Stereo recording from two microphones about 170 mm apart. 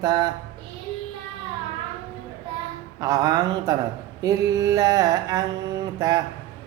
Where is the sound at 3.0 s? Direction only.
20° right (ahead or behind).